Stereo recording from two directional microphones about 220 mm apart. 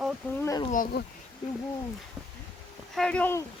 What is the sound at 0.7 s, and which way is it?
Speech, 40° left (ahead or behind).